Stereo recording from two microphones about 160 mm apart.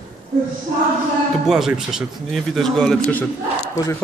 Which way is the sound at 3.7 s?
20° left (ahead or behind).